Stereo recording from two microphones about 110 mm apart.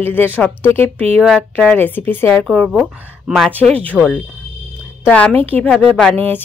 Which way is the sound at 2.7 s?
5° right (ahead or behind).